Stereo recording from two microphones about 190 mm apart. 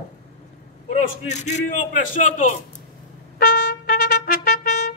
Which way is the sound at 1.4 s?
40° left (ahead or behind).